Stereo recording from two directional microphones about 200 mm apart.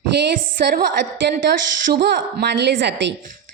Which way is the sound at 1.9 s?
55° right (ahead or behind).